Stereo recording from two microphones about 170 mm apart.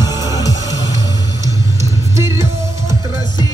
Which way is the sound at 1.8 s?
15° right (ahead or behind).